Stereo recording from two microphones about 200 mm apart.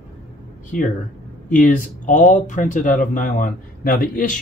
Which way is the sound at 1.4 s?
40° left (ahead or behind).